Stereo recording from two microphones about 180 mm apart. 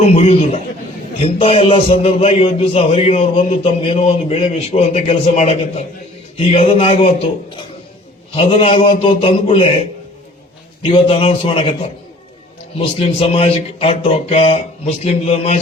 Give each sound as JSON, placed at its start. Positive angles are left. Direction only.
{"t": 0.0, "sound": "a man's voice", "side_deg": 35}
{"t": 10.8, "sound": "a man's voice", "side_deg": 30}